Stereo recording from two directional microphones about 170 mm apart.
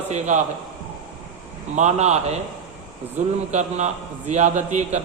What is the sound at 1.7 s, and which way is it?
Mantra, 40° right (ahead or behind).